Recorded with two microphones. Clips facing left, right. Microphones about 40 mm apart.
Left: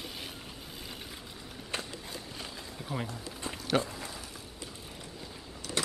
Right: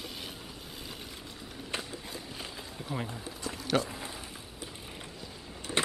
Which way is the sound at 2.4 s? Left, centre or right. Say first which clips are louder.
Right 1 dB; centre.